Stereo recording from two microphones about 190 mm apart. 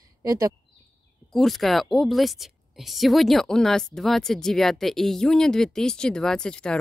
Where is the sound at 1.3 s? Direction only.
Centre (ahead or behind).